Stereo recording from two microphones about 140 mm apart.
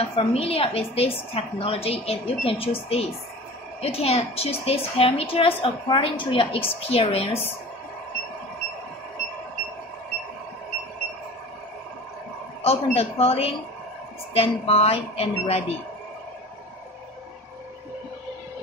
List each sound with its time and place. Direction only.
0.1 s a woman's voice: 40° left (ahead or behind)
12.6 s a woman's voice: 45° left (ahead or behind)